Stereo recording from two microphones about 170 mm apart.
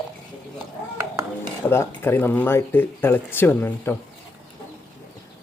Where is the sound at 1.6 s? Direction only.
15° left (ahead or behind).